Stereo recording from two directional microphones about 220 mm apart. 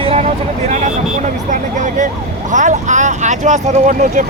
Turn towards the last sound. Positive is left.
turn(degrees=-35)  # may be behind; listen again after turning